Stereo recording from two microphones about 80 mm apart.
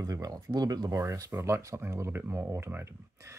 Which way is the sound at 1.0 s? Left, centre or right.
Right.